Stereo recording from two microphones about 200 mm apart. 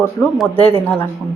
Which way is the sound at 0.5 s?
30° left (ahead or behind).